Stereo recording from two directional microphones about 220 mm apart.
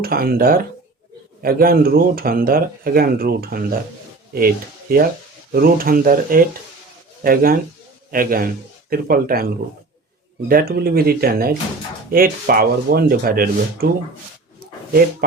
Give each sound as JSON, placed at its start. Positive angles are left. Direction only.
{"t": 0.0, "sound": "speech", "side_deg": -45}
{"t": 10.5, "sound": "speech", "side_deg": -45}